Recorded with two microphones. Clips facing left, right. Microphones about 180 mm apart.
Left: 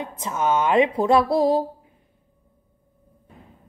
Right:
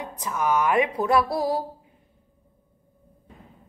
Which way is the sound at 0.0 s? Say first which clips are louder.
Left 2 dB; 25° left (ahead or behind).